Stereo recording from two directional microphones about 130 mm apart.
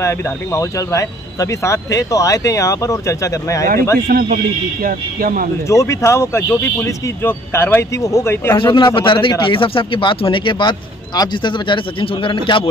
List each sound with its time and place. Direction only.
0.0 s speech: 25° left (ahead or behind)
4.8 s speech: 90° right
5.7 s speech: 25° left (ahead or behind)
8.5 s speech: 35° left (ahead or behind)